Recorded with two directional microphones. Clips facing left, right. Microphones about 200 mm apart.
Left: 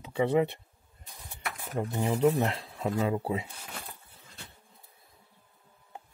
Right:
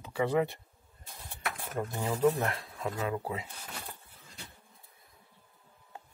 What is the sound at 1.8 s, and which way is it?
Speech, 20° left (ahead or behind).